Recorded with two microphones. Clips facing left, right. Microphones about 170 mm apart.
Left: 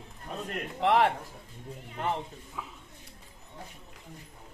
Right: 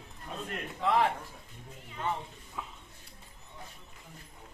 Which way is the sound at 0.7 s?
70° left (ahead or behind).